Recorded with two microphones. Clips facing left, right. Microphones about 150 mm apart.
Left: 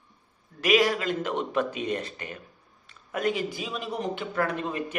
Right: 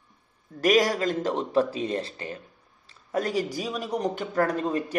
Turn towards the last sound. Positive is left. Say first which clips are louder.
# right 4 dB
turn(degrees=-35)  # may be behind; listen again after turning